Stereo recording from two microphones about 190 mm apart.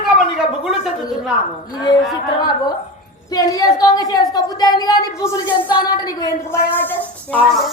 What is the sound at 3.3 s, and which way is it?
A woman's voice, 20° left (ahead or behind).